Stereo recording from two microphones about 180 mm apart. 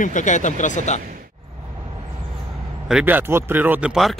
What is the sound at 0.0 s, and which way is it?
Speech, 45° left (ahead or behind).